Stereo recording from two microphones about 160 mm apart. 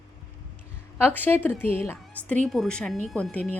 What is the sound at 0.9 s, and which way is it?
A woman's voice, 10° left (ahead or behind).